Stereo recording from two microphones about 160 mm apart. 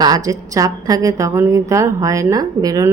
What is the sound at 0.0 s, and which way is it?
A woman's voice, 20° right (ahead or behind).